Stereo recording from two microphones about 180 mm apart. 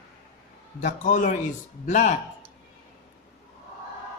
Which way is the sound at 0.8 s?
45° left (ahead or behind).